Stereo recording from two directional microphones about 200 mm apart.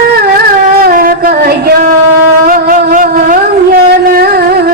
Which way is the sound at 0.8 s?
45° right (ahead or behind).